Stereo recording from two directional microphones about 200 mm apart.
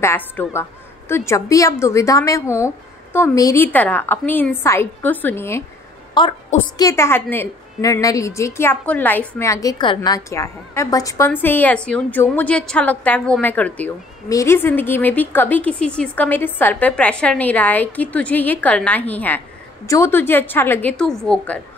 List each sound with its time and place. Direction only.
0.0 s a woman's voice: 10° left (ahead or behind)